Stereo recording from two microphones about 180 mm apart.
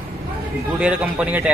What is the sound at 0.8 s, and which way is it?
Speech, 5° right (ahead or behind).